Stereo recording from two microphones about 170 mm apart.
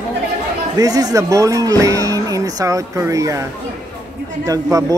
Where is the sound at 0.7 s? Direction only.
20° right (ahead or behind).